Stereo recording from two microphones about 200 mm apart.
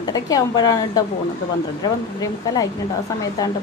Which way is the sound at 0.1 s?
20° left (ahead or behind).